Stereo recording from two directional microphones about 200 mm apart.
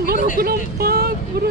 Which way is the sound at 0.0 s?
50° right (ahead or behind).